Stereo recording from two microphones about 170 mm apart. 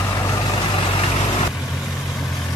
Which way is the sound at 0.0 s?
20° left (ahead or behind).